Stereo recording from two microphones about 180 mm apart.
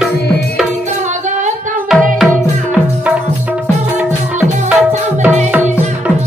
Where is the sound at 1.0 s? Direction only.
40° right (ahead or behind).